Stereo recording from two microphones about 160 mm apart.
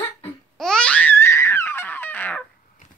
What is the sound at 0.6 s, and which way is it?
Babbling, 5° left (ahead or behind).